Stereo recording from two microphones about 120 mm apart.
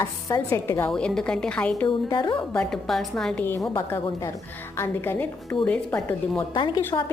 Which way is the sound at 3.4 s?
20° left (ahead or behind).